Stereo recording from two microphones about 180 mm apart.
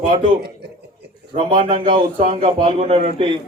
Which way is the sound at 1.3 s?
30° right (ahead or behind).